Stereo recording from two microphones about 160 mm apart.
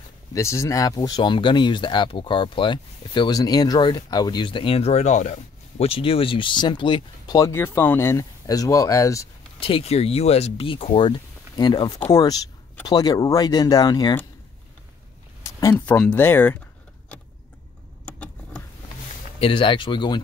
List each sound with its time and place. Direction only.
0.3 s speech: 20° left (ahead or behind)
9.6 s speech: 35° left (ahead or behind)
15.7 s speech: 10° left (ahead or behind)
18.0 s vehicle: 10° left (ahead or behind)
19.4 s speech: 30° left (ahead or behind)